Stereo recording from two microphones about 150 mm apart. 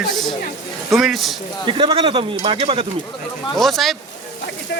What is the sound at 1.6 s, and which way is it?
Speech, 35° right (ahead or behind).